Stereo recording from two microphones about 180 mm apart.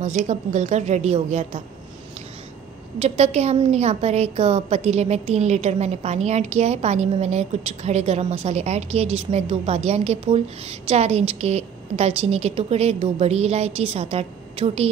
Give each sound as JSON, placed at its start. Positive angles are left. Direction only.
{"t": 0.0, "sound": "a woman's voice", "side_deg": -40}
{"t": 3.0, "sound": "a woman's voice", "side_deg": -35}